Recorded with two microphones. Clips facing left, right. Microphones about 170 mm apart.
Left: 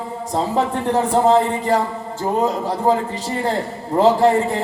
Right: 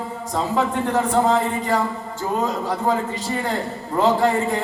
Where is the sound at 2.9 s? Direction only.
30° left (ahead or behind).